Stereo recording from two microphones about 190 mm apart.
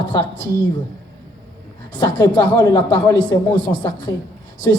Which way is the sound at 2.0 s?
20° left (ahead or behind).